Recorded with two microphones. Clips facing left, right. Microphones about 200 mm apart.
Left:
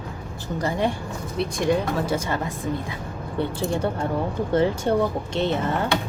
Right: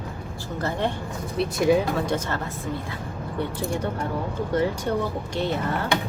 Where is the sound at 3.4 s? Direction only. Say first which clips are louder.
Left 3 dB; 30° left (ahead or behind).